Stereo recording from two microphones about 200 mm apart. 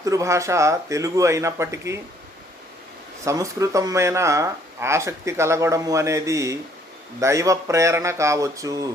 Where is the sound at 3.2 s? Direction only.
15° right (ahead or behind).